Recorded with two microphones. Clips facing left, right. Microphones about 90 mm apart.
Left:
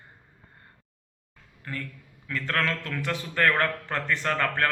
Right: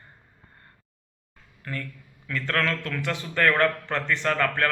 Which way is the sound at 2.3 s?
20° left (ahead or behind).